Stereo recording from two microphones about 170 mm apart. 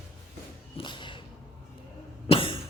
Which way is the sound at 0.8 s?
30° left (ahead or behind).